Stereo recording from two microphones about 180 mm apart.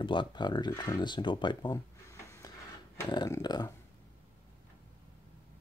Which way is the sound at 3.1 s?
20° left (ahead or behind).